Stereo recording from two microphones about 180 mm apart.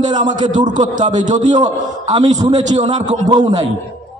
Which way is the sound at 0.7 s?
45° right (ahead or behind).